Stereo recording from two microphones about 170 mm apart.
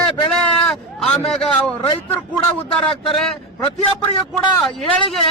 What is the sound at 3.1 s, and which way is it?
Speech, centre (ahead or behind).